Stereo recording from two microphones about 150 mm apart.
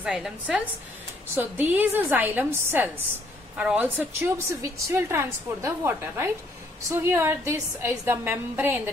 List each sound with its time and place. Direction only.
0.0 s a woman's voice: 5° right (ahead or behind)